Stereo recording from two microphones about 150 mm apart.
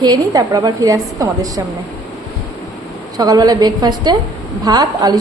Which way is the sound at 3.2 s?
25° right (ahead or behind).